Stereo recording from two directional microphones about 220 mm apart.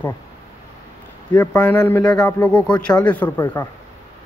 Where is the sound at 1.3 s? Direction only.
5° left (ahead or behind).